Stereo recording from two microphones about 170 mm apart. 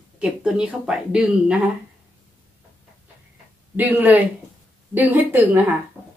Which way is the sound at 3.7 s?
10° right (ahead or behind).